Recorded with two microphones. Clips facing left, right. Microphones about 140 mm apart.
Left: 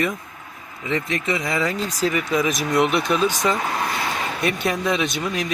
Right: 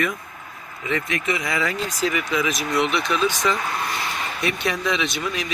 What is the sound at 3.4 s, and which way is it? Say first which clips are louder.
Speech: left 1 dB; 35° left (ahead or behind).